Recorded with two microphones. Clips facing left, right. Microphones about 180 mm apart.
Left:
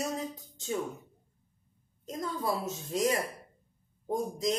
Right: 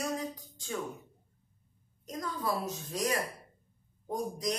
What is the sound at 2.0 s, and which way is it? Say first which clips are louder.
Speech: left 2 dB; 25° left (ahead or behind).